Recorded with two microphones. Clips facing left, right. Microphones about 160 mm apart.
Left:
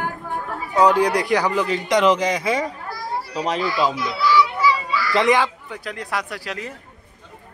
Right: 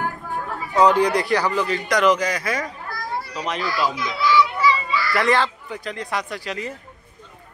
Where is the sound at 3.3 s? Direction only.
35° left (ahead or behind).